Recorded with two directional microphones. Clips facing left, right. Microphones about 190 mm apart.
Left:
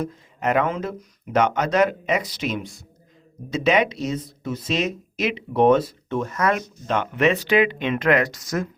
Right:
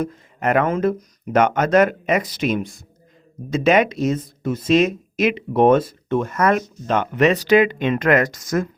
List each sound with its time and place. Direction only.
0.0 s speech: 55° right (ahead or behind)